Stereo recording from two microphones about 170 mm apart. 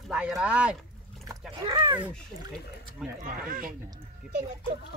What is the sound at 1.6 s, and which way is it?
Speech, 25° right (ahead or behind).